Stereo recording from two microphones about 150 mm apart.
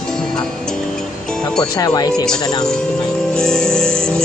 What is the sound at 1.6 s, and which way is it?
Speech, 25° left (ahead or behind).